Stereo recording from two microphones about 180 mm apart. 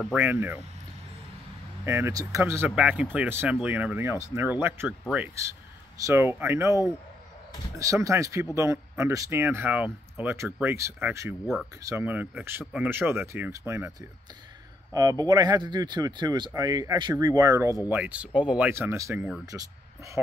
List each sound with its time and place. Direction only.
0.0 s speech: 10° right (ahead or behind)
1.9 s speech: 15° right (ahead or behind)
15.0 s speech: 20° right (ahead or behind)